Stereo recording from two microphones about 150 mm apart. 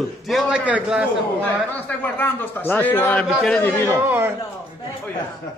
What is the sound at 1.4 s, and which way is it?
A man's voice, 10° left (ahead or behind).